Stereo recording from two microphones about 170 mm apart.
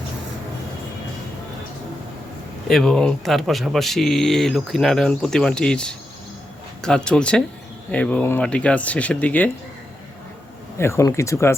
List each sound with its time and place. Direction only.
2.6 s speech: centre (ahead or behind)
10.8 s speech: 15° left (ahead or behind)